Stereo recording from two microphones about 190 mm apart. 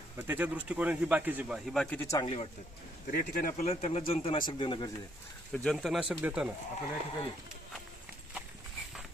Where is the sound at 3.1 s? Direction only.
50° left (ahead or behind).